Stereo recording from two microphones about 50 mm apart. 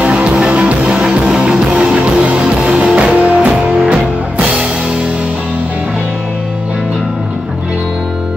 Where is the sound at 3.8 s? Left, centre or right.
Centre.